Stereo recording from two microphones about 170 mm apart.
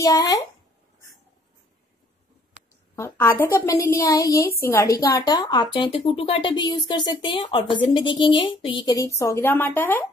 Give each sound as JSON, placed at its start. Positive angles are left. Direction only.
{"t": 0.0, "sound": "a woman's voice", "side_deg": 20}
{"t": 3.0, "sound": "a woman's voice", "side_deg": 15}